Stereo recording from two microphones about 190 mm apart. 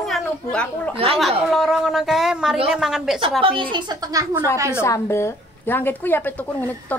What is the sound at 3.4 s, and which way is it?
A woman's voice, 25° right (ahead or behind).